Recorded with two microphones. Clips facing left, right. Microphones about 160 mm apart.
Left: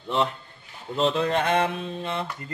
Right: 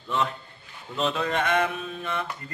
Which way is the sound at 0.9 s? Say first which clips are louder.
Left 3 dB; 30° left (ahead or behind).